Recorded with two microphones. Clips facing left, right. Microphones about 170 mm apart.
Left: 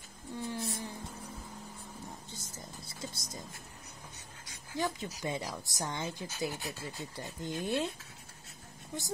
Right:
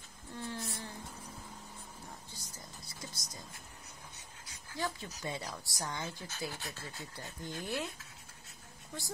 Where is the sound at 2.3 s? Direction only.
25° left (ahead or behind).